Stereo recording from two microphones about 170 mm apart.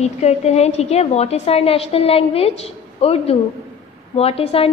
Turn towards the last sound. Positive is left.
turn(degrees=35)  # may be behind; listen again after turning